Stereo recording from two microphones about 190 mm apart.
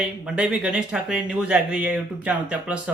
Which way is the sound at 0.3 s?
5° right (ahead or behind).